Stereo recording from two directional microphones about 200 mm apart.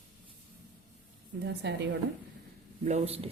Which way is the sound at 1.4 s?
55° right (ahead or behind).